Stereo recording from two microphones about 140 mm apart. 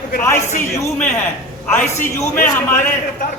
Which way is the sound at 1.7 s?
15° left (ahead or behind).